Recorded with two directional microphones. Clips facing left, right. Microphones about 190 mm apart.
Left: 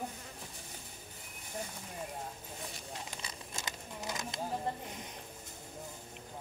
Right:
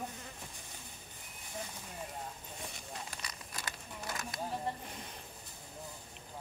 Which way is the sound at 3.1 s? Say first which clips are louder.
Left 2 dB; 25° left (ahead or behind).